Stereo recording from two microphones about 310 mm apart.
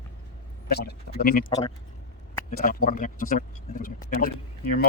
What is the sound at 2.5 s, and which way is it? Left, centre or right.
Speech, left.